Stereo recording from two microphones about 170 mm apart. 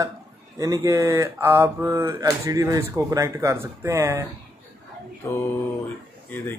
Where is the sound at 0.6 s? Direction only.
20° right (ahead or behind).